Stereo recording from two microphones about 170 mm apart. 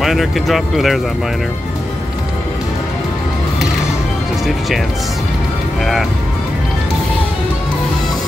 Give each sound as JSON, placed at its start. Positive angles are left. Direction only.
{"t": 0.0, "sound": "speech", "side_deg": 0}